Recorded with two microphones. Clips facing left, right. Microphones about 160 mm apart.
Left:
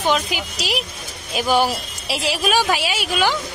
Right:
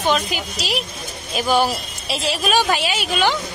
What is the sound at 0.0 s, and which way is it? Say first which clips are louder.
A woman's voice: even; 10° left (ahead or behind).